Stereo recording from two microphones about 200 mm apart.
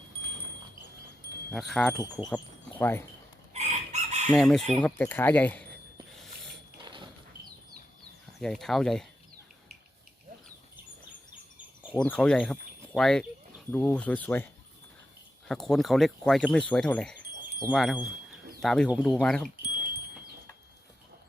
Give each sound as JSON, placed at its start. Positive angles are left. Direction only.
{"t": 1.5, "sound": "speech", "side_deg": 0}
{"t": 2.0, "sound": "speech", "side_deg": 20}
{"t": 2.2, "sound": "speech", "side_deg": 5}
{"t": 3.5, "sound": "chicken", "side_deg": -35}
{"t": 4.3, "sound": "speech", "side_deg": 0}
{"t": 6.8, "sound": "a sound", "side_deg": -25}
{"t": 8.4, "sound": "speech", "side_deg": 0}
{"t": 11.9, "sound": "speech", "side_deg": 5}
{"t": 15.4, "sound": "speech", "side_deg": 0}